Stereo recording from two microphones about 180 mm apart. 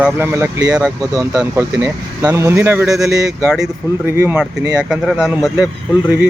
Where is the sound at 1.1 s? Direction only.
20° right (ahead or behind).